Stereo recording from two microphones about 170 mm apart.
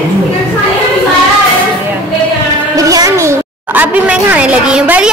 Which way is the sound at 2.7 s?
20° right (ahead or behind).